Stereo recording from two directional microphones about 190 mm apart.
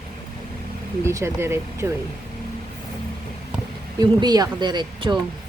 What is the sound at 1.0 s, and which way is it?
Speech, 15° right (ahead or behind).